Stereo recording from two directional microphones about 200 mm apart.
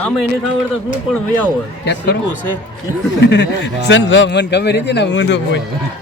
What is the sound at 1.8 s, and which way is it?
Speech, 55° left (ahead or behind).